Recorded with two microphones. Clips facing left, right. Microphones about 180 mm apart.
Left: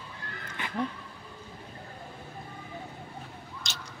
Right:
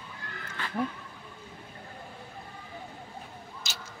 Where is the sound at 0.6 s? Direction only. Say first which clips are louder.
Even; 20° left (ahead or behind).